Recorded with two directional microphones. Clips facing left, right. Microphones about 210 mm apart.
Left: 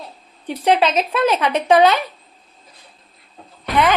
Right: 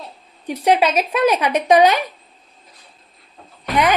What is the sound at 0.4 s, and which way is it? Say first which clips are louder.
A woman's voice: even; 10° right (ahead or behind).